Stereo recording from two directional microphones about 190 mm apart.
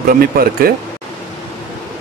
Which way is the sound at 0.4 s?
50° right (ahead or behind).